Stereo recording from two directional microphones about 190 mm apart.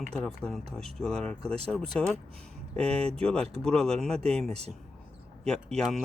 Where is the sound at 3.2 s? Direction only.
5° left (ahead or behind).